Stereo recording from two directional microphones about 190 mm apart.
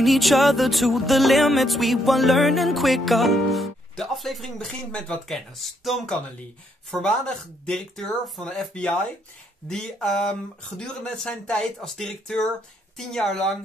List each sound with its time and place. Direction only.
0.0 s music: centre (ahead or behind)